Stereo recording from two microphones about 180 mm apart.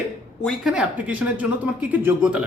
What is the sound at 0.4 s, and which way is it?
A man's voice, centre (ahead or behind).